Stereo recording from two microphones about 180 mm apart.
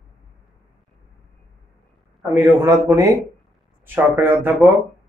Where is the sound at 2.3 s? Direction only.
15° right (ahead or behind).